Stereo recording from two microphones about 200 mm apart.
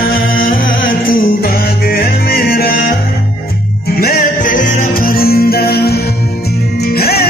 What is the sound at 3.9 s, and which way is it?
Music, 50° left (ahead or behind).